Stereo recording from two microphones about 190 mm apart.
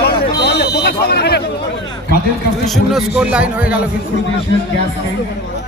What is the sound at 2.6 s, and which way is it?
A man's voice, centre (ahead or behind).